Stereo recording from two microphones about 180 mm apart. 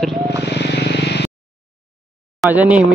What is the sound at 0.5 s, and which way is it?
Vehicle, 70° left (ahead or behind).